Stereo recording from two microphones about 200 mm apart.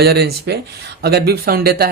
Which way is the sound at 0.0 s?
55° right (ahead or behind).